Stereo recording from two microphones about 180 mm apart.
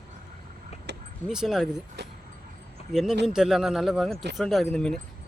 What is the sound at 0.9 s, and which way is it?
Vehicle, 70° right (ahead or behind).